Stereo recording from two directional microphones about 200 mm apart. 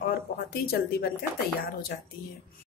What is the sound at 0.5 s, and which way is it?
Speech, 50° left (ahead or behind).